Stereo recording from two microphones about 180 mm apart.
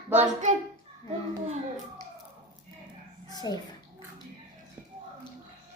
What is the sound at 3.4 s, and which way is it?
Speech, 20° left (ahead or behind).